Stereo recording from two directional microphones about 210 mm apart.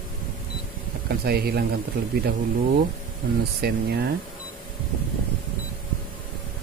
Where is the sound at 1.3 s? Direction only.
50° right (ahead or behind).